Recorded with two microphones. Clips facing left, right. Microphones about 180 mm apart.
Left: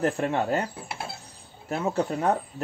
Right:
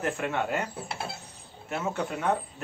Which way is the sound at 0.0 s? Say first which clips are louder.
Left 4 dB; 35° left (ahead or behind).